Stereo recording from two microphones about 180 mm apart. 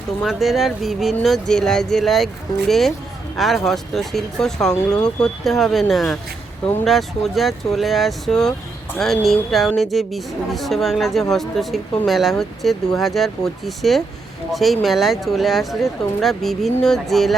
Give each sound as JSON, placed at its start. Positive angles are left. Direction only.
{"t": 0.2, "sound": "speech", "side_deg": 0}